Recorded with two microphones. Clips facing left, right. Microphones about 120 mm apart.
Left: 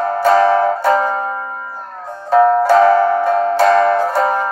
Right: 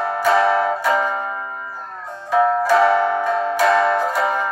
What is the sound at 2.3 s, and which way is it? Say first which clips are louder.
Music: left 5 dB; 40° left (ahead or behind).